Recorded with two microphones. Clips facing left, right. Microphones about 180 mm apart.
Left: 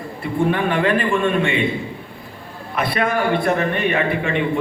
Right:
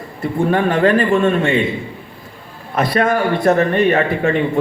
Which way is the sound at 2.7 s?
40° right (ahead or behind).